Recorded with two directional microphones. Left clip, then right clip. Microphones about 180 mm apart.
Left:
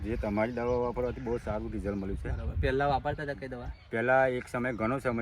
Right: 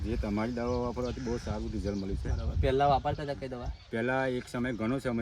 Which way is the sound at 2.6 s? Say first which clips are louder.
Right 2 dB; 20° right (ahead or behind).